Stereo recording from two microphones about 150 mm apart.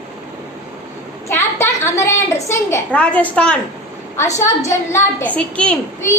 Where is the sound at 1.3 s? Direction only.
15° left (ahead or behind).